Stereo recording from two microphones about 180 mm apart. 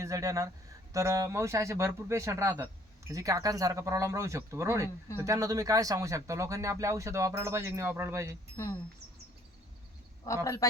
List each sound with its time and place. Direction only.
0.0 s speech: 20° right (ahead or behind)
8.6 s a man's voice: 15° left (ahead or behind)
10.2 s a man's voice: 15° left (ahead or behind)